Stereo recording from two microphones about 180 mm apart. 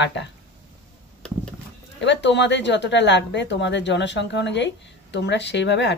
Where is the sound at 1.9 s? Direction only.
75° left (ahead or behind).